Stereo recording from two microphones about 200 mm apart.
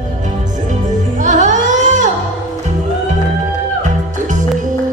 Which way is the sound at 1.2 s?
40° right (ahead or behind).